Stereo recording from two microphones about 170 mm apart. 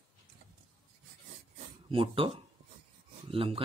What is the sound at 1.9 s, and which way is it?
Speech, 30° right (ahead or behind).